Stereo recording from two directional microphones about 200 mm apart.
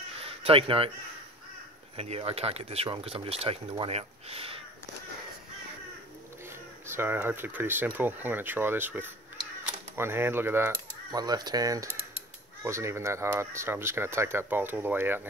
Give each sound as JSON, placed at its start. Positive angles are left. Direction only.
{"t": 0.2, "sound": "a sound", "side_deg": -30}
{"t": 2.0, "sound": "speech", "side_deg": -30}
{"t": 7.0, "sound": "speech", "side_deg": -10}